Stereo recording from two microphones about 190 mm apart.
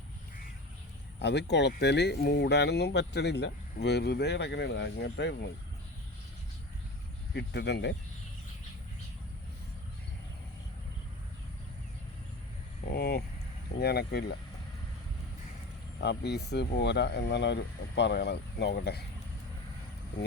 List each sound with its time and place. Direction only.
1.2 s speech: 65° left (ahead or behind)
7.3 s speech: 65° left (ahead or behind)
12.9 s a sound: 55° left (ahead or behind)
13.7 s speech: 55° left (ahead or behind)
16.0 s speech: 60° left (ahead or behind)